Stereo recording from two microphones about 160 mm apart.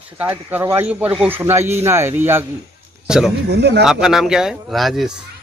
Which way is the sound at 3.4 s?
90° right.